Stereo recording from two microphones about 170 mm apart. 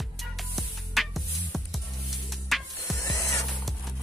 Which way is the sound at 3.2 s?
15° left (ahead or behind).